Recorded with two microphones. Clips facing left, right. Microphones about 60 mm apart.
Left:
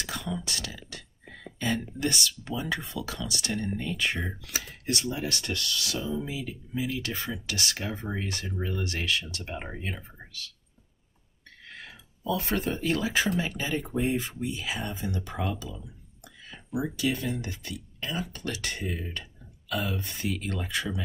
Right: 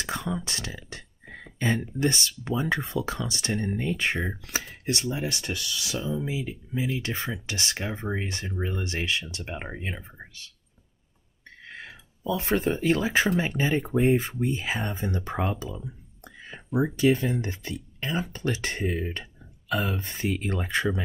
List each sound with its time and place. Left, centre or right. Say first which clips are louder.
0.0 s a sound: right 3 dB; right
1.3 s speech: right 3 dB; right
5.2 s speech: right 1 dB; centre
11.6 s speech: right 3 dB; right